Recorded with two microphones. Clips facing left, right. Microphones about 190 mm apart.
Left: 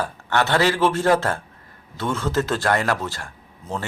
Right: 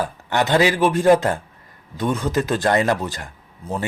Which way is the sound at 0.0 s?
15° right (ahead or behind).